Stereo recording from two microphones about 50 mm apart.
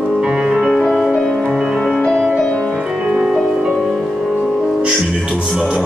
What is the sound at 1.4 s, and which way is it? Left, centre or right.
Music, centre.